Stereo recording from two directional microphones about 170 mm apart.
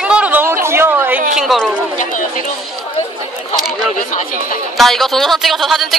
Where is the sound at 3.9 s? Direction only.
50° left (ahead or behind).